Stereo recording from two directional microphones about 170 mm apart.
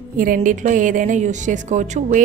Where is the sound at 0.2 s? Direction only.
55° right (ahead or behind).